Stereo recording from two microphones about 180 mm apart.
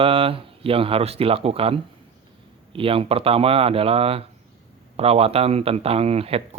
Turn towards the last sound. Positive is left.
turn(degrees=-30)  # may be behind; listen again after turning